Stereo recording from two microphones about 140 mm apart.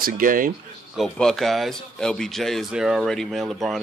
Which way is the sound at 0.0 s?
80° right.